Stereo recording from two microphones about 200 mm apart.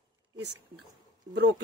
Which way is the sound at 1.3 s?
60° right (ahead or behind).